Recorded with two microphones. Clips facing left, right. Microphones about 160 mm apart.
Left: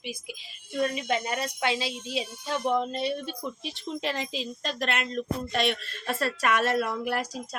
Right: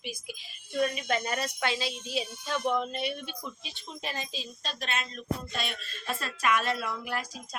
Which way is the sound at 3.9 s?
90° left.